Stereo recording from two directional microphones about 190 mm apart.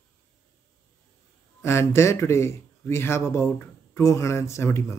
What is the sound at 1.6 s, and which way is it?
A man's voice, 15° left (ahead or behind).